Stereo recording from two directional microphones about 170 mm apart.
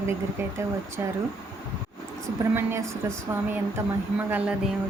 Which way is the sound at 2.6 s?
15° right (ahead or behind).